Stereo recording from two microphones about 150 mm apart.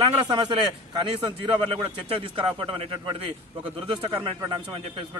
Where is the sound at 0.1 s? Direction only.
30° right (ahead or behind).